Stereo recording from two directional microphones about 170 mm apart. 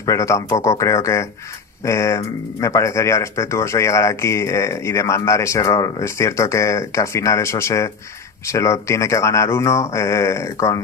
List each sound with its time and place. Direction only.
0.0 s speech: 20° left (ahead or behind)